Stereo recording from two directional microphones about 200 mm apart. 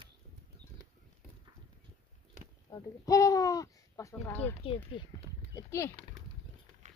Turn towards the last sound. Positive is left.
turn(degrees=15)  # may be behind; listen again after turning